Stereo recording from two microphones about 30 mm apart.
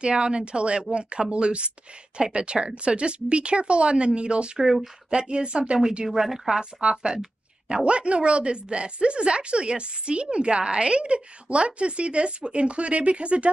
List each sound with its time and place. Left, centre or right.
0.0 s a woman's voice: right
6.1 s a woman's voice: centre
6.6 s a woman's voice: right